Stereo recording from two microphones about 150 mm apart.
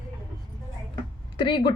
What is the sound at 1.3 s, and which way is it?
Speech, 30° left (ahead or behind).